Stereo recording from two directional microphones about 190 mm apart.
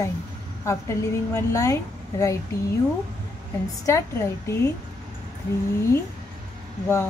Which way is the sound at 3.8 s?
15° left (ahead or behind).